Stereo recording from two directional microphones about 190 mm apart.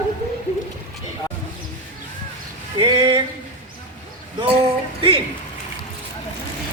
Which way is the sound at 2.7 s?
25° right (ahead or behind).